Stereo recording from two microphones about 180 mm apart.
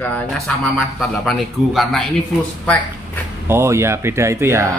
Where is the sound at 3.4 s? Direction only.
15° right (ahead or behind).